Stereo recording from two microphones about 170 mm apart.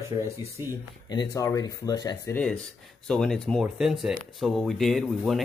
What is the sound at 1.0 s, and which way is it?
Speech, 25° left (ahead or behind).